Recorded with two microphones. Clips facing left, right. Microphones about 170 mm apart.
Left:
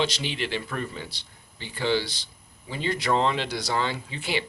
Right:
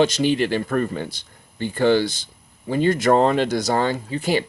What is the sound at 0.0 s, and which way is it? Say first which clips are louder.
Speech: right 10 dB; 45° right (ahead or behind).